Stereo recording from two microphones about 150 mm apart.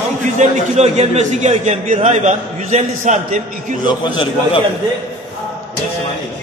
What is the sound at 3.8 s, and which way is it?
Speech, 30° left (ahead or behind).